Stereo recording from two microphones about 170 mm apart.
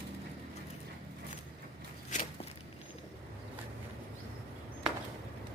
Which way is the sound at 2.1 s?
45° left (ahead or behind).